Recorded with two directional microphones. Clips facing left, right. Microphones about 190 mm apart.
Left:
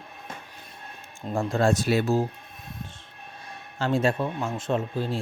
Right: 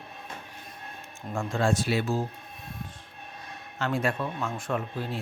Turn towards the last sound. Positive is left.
turn(degrees=25)  # may be behind; listen again after turning